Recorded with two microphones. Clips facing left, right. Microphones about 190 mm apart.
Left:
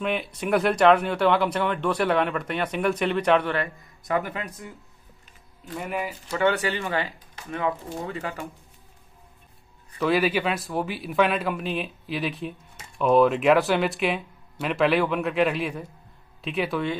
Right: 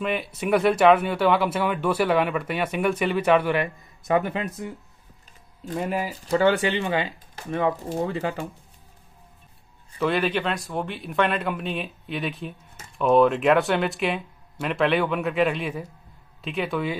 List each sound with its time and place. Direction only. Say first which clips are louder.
0.0 s speech: right 1 dB; centre (ahead or behind)
4.1 s speech: right 4 dB; 25° right (ahead or behind)
5.8 s speech: right 3 dB; 30° right (ahead or behind)
9.9 s speech: left 1 dB; 5° left (ahead or behind)